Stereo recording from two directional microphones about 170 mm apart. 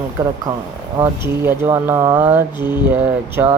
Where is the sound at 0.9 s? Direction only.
15° right (ahead or behind).